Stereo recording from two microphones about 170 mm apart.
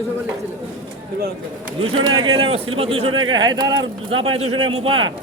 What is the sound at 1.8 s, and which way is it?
Speech, 30° right (ahead or behind).